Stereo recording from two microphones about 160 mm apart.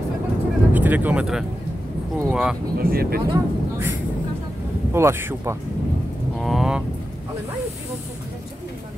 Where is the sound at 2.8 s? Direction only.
70° right (ahead or behind).